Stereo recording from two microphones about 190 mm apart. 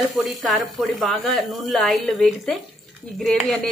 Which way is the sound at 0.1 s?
Centre (ahead or behind).